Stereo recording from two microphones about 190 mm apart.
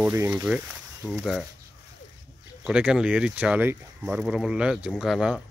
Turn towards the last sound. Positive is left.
turn(degrees=-5)  # may be behind; listen again after turning